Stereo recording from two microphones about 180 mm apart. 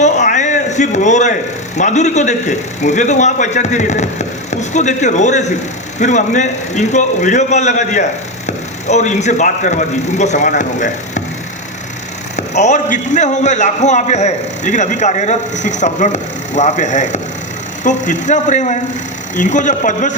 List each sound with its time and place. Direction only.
0.0 s a sound: 40° left (ahead or behind)
1.7 s a man's voice: 40° left (ahead or behind)
12.4 s a man's voice: 40° left (ahead or behind)